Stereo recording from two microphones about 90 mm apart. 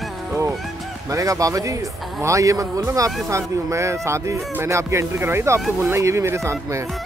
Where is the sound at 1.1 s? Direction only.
40° right (ahead or behind).